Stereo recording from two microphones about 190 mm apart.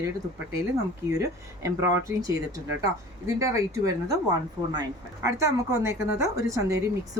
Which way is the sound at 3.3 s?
15° right (ahead or behind).